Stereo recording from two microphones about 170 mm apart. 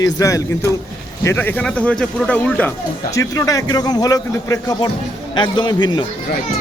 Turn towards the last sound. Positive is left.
turn(degrees=25)  # may be behind; listen again after turning